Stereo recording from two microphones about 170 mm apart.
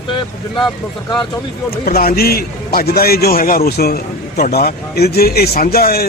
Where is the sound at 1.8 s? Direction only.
55° left (ahead or behind).